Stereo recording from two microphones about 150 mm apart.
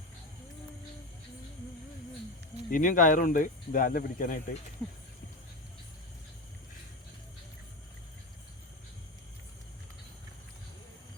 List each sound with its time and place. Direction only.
2.6 s speech: 65° left (ahead or behind)